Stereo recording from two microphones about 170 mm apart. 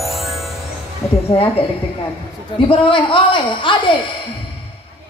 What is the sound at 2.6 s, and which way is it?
A man's voice, 30° left (ahead or behind).